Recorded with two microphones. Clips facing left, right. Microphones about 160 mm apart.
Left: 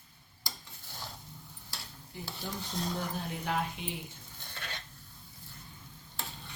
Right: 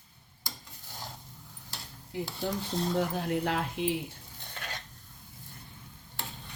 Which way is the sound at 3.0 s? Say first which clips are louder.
Right 8 dB; 80° right.